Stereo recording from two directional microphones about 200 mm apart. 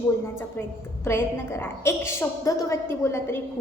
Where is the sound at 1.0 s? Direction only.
15° left (ahead or behind).